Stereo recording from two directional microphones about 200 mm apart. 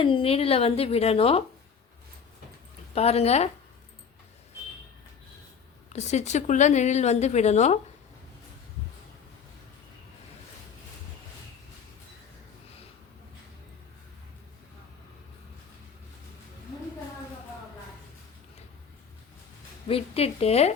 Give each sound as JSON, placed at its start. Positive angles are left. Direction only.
{"t": 0.0, "sound": "speech", "side_deg": 25}
{"t": 2.9, "sound": "speech", "side_deg": 30}
{"t": 5.9, "sound": "speech", "side_deg": 35}
{"t": 19.9, "sound": "speech", "side_deg": 30}